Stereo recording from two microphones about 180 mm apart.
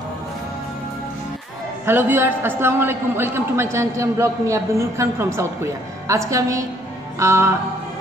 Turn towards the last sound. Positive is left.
turn(degrees=-15)  # may be behind; listen again after turning